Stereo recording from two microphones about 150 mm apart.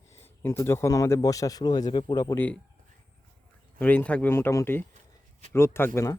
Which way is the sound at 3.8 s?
10° left (ahead or behind).